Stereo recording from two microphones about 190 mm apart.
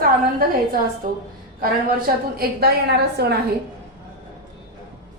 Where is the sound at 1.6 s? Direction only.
50° right (ahead or behind).